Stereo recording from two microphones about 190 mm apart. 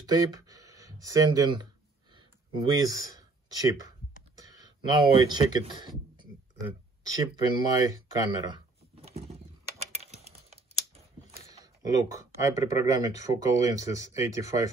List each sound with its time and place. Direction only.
0.0 s speech: 20° right (ahead or behind)
2.1 s a sound: 20° right (ahead or behind)
4.4 s speech: 20° right (ahead or behind)
11.5 s speech: 20° right (ahead or behind)